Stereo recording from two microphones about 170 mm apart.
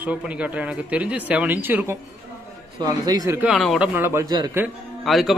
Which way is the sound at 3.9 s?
15° right (ahead or behind).